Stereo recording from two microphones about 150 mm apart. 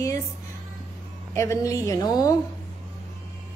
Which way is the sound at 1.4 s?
20° left (ahead or behind).